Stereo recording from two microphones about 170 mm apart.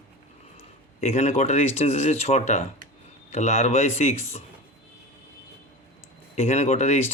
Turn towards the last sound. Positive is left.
turn(degrees=40)  # may be behind; listen again after turning